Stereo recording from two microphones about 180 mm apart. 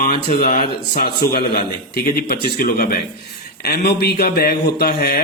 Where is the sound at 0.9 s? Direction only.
60° left (ahead or behind).